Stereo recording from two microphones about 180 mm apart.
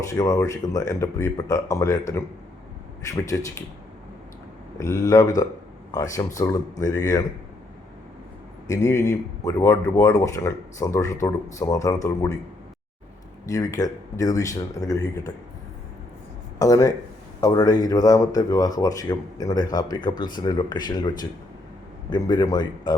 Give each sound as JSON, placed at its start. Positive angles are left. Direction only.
{"t": 0.1, "sound": "speech", "side_deg": 20}
{"t": 4.8, "sound": "speech", "side_deg": 15}
{"t": 8.6, "sound": "speech", "side_deg": 15}
{"t": 13.5, "sound": "speech", "side_deg": 20}
{"t": 16.6, "sound": "speech", "side_deg": 20}